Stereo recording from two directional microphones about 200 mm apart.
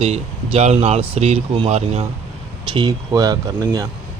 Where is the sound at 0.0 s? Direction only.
30° right (ahead or behind).